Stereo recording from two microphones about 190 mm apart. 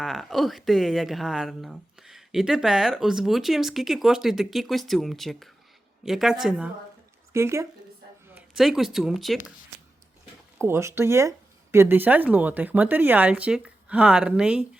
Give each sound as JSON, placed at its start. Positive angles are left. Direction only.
{"t": 0.0, "sound": "speech", "side_deg": 0}
{"t": 8.4, "sound": "speech", "side_deg": 0}
{"t": 10.7, "sound": "speech", "side_deg": -15}